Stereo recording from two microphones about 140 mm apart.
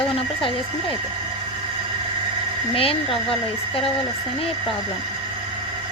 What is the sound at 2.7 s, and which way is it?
Speech, 40° left (ahead or behind).